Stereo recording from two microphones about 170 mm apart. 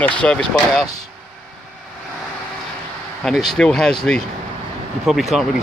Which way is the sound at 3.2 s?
Centre (ahead or behind).